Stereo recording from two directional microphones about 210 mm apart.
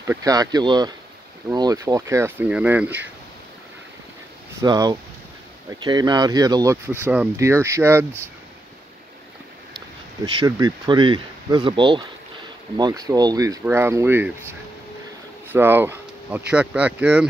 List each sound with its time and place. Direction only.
0.0 s speech: 15° right (ahead or behind)
4.6 s speech: 15° right (ahead or behind)
10.2 s speech: 20° right (ahead or behind)
15.5 s speech: 10° right (ahead or behind)